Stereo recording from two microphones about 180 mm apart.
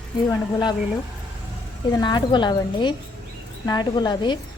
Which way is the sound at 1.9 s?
25° left (ahead or behind).